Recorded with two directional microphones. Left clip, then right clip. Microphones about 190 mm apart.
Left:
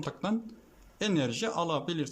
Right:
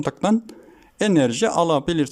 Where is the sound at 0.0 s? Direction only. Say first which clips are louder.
Right 12 dB; 40° right (ahead or behind).